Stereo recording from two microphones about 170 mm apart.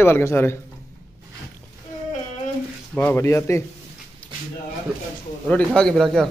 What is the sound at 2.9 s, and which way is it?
Speech, 15° left (ahead or behind).